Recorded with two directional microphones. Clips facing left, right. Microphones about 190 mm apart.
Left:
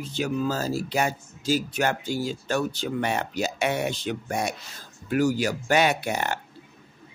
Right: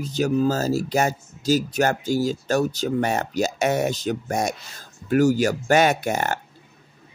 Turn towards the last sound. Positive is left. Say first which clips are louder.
# right 4 dB
turn(degrees=-45)  # may be behind; listen again after turning